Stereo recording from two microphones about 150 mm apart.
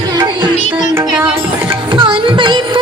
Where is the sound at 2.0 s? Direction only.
30° right (ahead or behind).